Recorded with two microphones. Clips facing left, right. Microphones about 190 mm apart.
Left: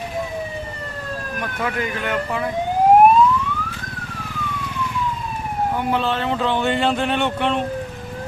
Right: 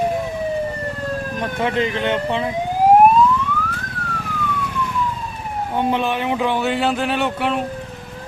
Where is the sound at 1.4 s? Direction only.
25° right (ahead or behind).